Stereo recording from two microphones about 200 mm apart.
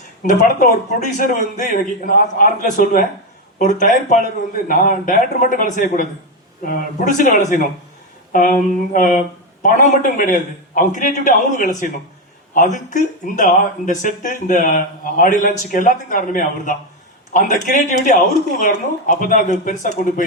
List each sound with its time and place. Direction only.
0.2 s speech: 40° left (ahead or behind)
8.3 s a sound: 45° left (ahead or behind)
9.6 s speech: 40° left (ahead or behind)